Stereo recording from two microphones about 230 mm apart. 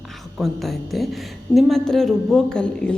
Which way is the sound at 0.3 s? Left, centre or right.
Centre.